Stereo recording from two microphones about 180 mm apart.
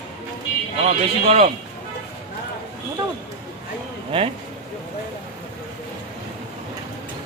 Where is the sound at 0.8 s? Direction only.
40° right (ahead or behind).